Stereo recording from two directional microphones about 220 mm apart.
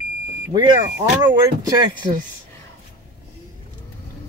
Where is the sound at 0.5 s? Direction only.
20° right (ahead or behind).